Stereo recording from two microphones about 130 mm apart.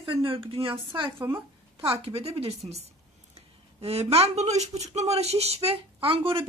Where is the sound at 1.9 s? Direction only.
50° right (ahead or behind).